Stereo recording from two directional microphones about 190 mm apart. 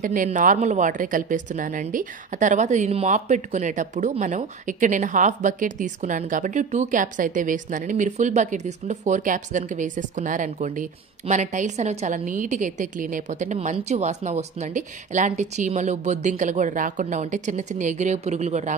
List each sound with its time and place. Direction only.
0.0 s a woman's voice: 45° right (ahead or behind)